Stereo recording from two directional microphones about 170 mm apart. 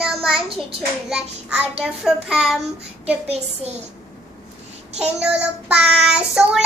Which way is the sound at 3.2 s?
40° right (ahead or behind).